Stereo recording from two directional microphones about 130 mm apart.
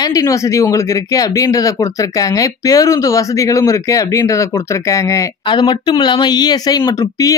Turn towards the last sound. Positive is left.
turn(degrees=30)  # may be behind; listen again after turning